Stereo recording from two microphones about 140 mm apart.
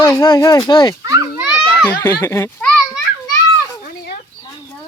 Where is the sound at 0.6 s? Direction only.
35° left (ahead or behind).